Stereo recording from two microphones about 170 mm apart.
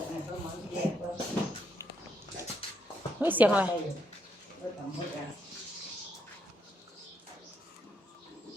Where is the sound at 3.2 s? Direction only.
10° right (ahead or behind).